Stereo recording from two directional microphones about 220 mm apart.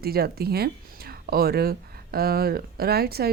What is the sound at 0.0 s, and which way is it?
Speech, 45° right (ahead or behind).